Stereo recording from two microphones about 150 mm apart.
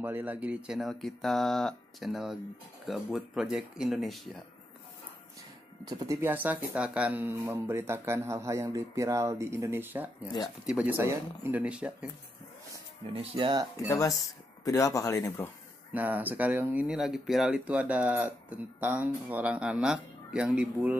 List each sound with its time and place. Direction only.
0.0 s speech: 10° right (ahead or behind)
5.9 s speech: 25° right (ahead or behind); by 12.1 s 5° right (ahead or behind)
13.1 s speech: 40° right (ahead or behind)
13.7 s speech: 20° left (ahead or behind)
15.9 s speech: 10° right (ahead or behind)